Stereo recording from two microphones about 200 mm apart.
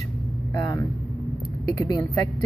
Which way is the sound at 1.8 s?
20° left (ahead or behind).